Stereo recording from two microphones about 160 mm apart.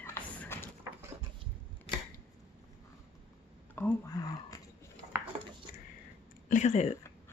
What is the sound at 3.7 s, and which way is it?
Whispering, 10° left (ahead or behind).